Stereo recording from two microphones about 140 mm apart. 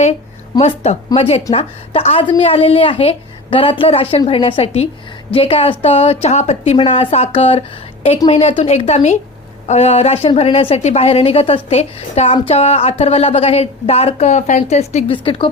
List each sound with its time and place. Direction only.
0.6 s a woman's voice: 45° left (ahead or behind)
15.1 s a woman's voice: 35° left (ahead or behind)